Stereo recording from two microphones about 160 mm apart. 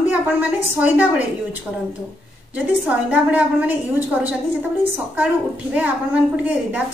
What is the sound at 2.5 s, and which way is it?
A woman's voice, 10° right (ahead or behind).